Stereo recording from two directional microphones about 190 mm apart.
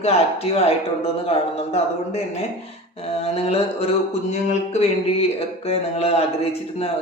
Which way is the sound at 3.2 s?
30° left (ahead or behind).